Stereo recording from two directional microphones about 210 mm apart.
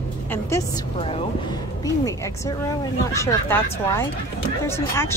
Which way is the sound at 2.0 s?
15° left (ahead or behind).